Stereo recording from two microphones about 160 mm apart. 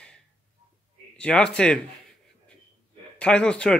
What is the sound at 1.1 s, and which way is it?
Speech, 5° left (ahead or behind).